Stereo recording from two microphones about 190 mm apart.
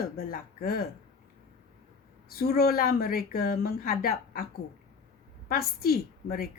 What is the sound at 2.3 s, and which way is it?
Speech, 55° left (ahead or behind).